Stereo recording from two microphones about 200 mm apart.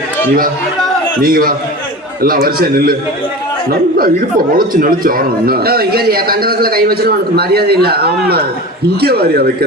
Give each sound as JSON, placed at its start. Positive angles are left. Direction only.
{"t": 1.2, "sound": "speech", "side_deg": -45}